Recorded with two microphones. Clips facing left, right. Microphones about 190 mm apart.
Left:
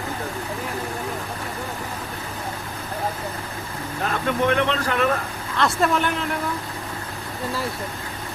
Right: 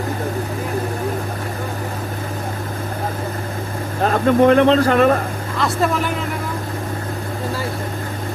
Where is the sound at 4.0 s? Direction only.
35° right (ahead or behind).